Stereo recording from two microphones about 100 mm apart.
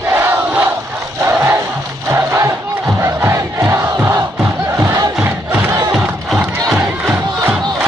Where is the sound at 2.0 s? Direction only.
25° right (ahead or behind).